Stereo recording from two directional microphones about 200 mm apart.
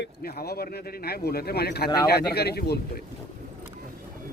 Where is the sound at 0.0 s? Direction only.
50° left (ahead or behind).